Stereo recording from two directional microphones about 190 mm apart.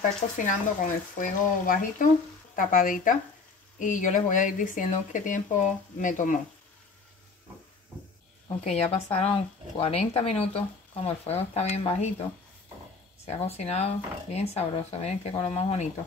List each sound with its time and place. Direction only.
0.5 s speech: 45° left (ahead or behind)
8.6 s speech: 30° left (ahead or behind)
13.2 s speech: 35° left (ahead or behind)